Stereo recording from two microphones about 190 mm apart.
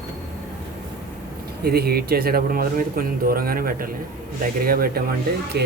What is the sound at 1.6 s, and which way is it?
Speech, 55° right (ahead or behind).